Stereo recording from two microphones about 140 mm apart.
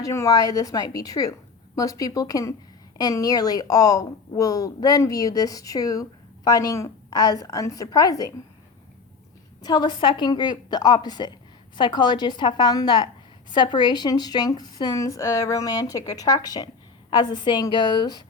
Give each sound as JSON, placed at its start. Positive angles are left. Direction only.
{"t": 0.0, "sound": "a woman's voice", "side_deg": 20}
{"t": 9.6, "sound": "a woman's voice", "side_deg": 30}